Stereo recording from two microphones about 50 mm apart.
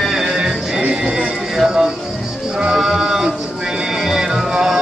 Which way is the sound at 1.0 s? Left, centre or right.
Centre.